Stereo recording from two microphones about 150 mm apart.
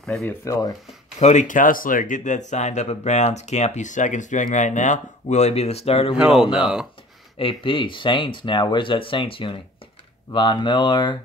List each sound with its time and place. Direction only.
0.2 s speech: 20° left (ahead or behind)
1.2 s speech: 55° left (ahead or behind)
6.1 s speech: 5° right (ahead or behind)
7.3 s speech: 35° left (ahead or behind)